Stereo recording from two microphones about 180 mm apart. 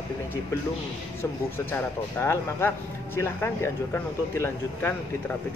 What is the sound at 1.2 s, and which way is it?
Speech, 15° left (ahead or behind).